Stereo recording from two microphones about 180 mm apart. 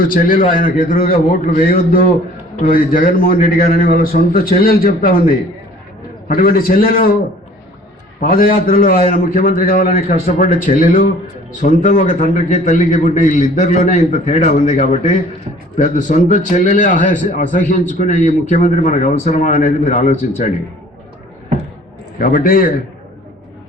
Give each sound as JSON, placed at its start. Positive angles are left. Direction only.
{"t": 0.0, "sound": "a man's voice", "side_deg": 50}
{"t": 6.2, "sound": "a man's voice", "side_deg": 50}
{"t": 8.2, "sound": "a man's voice", "side_deg": 50}
{"t": 22.2, "sound": "a man's voice", "side_deg": 50}